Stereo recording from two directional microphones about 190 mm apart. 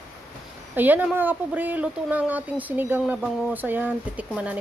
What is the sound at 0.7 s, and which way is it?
Speech, 10° right (ahead or behind).